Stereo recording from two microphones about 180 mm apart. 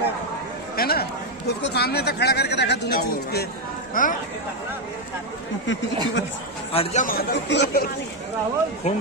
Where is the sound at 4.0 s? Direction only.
50° left (ahead or behind).